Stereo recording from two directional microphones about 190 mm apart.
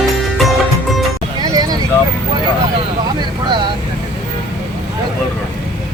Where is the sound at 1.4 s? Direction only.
20° right (ahead or behind).